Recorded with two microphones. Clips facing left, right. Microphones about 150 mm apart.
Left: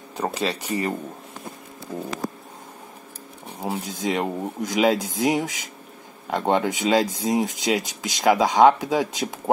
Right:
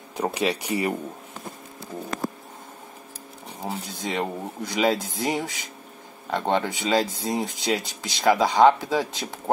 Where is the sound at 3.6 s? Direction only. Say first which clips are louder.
Left 5 dB; centre (ahead or behind).